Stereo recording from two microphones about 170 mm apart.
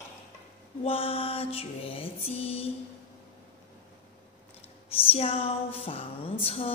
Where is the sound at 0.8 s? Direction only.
35° left (ahead or behind).